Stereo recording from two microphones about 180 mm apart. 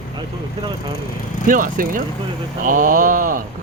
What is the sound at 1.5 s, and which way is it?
Speech, 50° right (ahead or behind).